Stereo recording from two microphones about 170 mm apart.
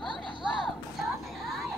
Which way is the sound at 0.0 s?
25° left (ahead or behind).